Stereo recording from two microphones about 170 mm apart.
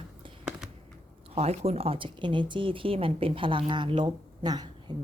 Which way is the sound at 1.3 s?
40° right (ahead or behind).